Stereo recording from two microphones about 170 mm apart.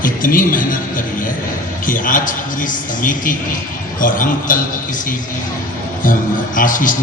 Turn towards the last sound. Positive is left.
turn(degrees=50)  # may be behind; listen again after turning